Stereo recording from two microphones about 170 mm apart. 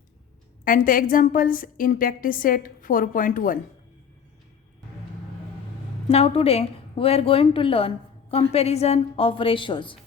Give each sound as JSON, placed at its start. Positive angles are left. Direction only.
{"t": 0.6, "sound": "a woman's voice", "side_deg": 55}
{"t": 6.1, "sound": "a woman's voice", "side_deg": 35}